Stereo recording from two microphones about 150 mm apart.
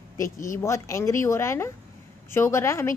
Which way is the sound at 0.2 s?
20° left (ahead or behind).